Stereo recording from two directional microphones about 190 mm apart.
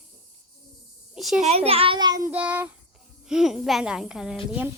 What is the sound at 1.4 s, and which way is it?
Speech, 35° right (ahead or behind).